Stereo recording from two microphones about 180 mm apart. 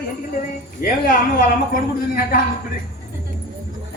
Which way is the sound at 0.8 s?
50° left (ahead or behind).